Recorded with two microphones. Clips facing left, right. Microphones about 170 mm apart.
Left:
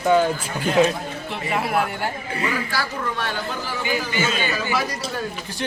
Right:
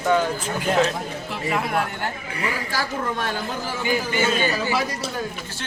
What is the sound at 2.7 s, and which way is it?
A man's voice, 40° right (ahead or behind).